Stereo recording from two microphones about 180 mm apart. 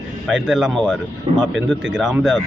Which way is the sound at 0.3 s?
5° right (ahead or behind).